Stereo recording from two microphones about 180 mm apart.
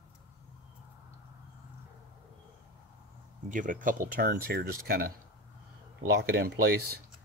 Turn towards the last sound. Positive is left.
turn(degrees=-60)  # may be behind; listen again after turning